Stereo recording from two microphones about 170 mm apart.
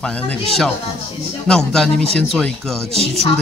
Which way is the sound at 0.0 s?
5° left (ahead or behind).